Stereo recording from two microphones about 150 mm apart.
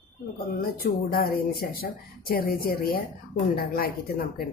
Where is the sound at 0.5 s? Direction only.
75° left (ahead or behind).